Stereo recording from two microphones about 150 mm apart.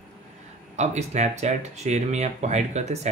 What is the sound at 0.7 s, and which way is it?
Speech, 50° right (ahead or behind).